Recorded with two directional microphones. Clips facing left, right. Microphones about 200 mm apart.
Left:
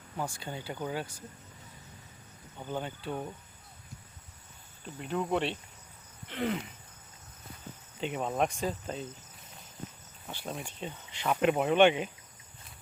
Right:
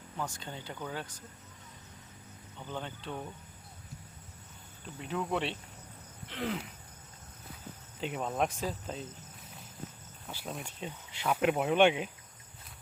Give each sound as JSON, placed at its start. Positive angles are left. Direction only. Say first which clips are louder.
{"t": 0.2, "sound": "speech", "louder": "left 3 dB", "side_deg": 10}
{"t": 2.6, "sound": "speech", "louder": "left 4 dB", "side_deg": 10}
{"t": 4.9, "sound": "speech", "louder": "left 3 dB", "side_deg": 0}
{"t": 6.2, "sound": "a sound", "louder": "left 3 dB", "side_deg": 0}
{"t": 8.0, "sound": "speech", "louder": "left 2 dB", "side_deg": 0}
{"t": 10.2, "sound": "speech", "louder": "left 2 dB", "side_deg": 0}